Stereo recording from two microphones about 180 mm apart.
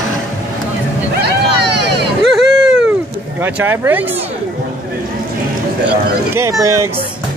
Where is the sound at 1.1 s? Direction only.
65° right (ahead or behind).